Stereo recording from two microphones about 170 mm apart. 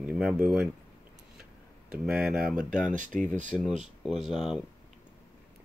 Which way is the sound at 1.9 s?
5° right (ahead or behind).